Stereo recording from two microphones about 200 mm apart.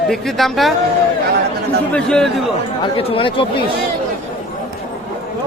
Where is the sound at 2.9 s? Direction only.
25° left (ahead or behind).